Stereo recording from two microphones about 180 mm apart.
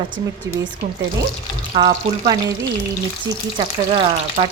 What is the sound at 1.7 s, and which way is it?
Speech, 25° right (ahead or behind).